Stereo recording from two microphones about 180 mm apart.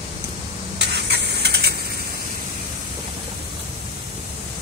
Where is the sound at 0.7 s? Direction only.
65° right (ahead or behind).